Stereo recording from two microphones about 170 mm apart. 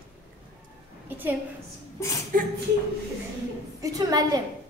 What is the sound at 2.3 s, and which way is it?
Speech, 55° right (ahead or behind).